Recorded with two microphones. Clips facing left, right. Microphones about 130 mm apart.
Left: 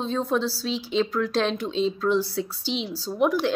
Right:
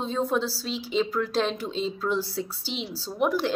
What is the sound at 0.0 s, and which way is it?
A woman's voice, 10° right (ahead or behind).